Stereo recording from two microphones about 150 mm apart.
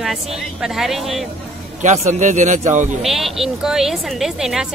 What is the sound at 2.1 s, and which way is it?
Speech, 55° right (ahead or behind).